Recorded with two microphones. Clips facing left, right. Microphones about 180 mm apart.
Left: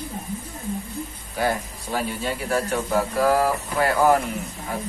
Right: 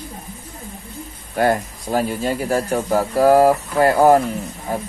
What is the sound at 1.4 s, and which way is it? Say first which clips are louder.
Speech: right 6 dB; 45° right (ahead or behind).